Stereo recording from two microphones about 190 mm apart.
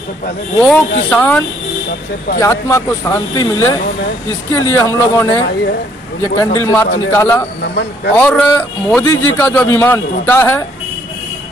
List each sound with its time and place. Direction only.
0.6 s a man's voice: 10° left (ahead or behind)
2.4 s a man's voice: 15° left (ahead or behind)
7.6 s speech: 60° left (ahead or behind)
8.2 s a man's voice: 10° left (ahead or behind)